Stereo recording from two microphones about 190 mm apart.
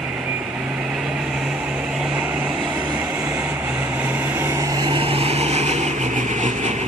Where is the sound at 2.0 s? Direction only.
5° right (ahead or behind).